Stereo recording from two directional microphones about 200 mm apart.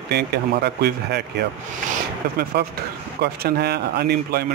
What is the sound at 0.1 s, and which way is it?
Speech, 55° right (ahead or behind).